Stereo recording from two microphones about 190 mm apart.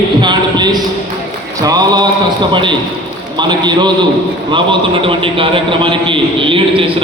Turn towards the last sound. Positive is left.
turn(degrees=-25)  # may be behind; listen again after turning